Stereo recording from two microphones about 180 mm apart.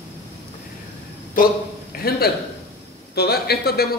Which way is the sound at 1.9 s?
55° left (ahead or behind).